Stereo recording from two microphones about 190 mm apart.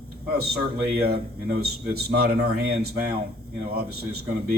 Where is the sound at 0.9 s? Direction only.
55° right (ahead or behind).